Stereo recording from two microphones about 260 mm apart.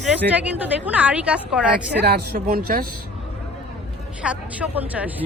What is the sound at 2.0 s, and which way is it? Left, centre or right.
Speech, right.